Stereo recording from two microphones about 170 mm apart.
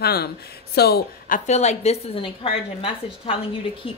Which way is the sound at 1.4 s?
40° left (ahead or behind).